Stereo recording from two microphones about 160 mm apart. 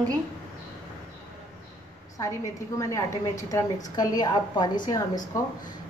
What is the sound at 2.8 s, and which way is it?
A woman's voice, 20° left (ahead or behind).